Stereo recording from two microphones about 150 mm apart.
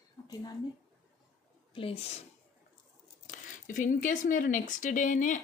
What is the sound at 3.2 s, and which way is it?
Speech, 60° left (ahead or behind).